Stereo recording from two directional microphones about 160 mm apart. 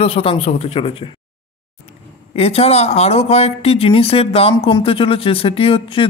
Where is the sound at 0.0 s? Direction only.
35° left (ahead or behind).